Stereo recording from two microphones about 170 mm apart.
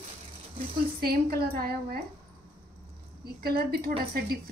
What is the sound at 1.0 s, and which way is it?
A woman's voice, 65° right (ahead or behind).